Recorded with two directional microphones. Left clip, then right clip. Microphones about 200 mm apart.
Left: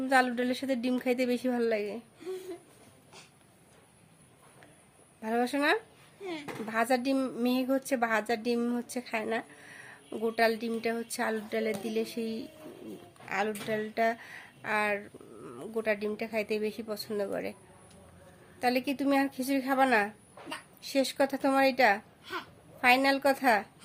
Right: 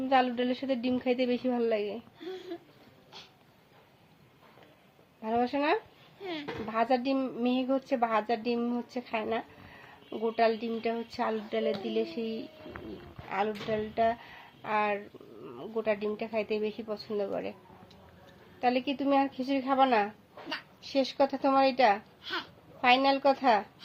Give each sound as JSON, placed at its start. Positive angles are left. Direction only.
{"t": 0.1, "sound": "speech", "side_deg": 15}
{"t": 5.2, "sound": "speech", "side_deg": 15}
{"t": 18.6, "sound": "a woman's voice", "side_deg": 15}
{"t": 21.9, "sound": "babbling", "side_deg": 10}
{"t": 23.1, "sound": "speech", "side_deg": 15}